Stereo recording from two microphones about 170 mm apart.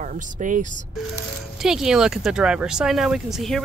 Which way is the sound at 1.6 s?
5° right (ahead or behind).